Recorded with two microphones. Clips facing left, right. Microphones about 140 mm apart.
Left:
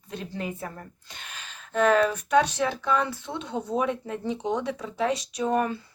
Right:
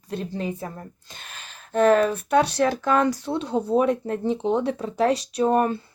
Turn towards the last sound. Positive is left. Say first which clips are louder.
# right 5 dB
turn(degrees=-35)  # may be behind; listen again after turning